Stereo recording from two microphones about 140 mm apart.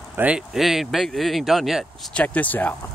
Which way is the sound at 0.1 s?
10° right (ahead or behind).